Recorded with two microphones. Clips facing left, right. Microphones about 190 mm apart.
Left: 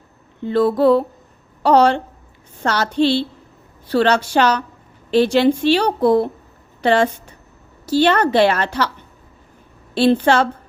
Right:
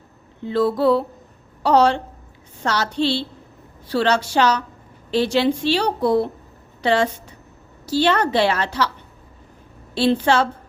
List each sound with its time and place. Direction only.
0.4 s a woman's voice: 55° left (ahead or behind)
9.9 s a woman's voice: 55° left (ahead or behind)